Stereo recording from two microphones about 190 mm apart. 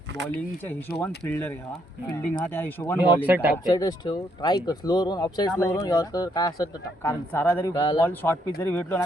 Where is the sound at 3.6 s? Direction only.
20° left (ahead or behind).